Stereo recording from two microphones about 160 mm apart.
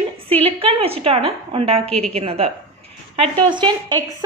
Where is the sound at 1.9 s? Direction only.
5° left (ahead or behind).